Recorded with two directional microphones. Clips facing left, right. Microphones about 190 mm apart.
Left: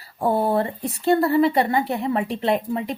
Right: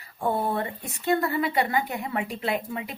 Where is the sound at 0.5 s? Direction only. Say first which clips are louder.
Left 7 dB; 30° left (ahead or behind).